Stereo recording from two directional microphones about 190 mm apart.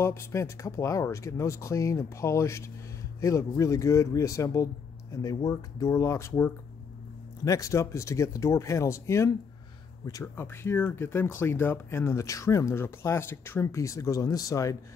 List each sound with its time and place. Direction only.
0.0 s speech: 15° left (ahead or behind)